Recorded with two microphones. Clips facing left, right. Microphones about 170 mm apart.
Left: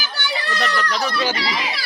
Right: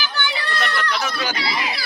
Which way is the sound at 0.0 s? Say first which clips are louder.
Right 1 dB; 40° left (ahead or behind).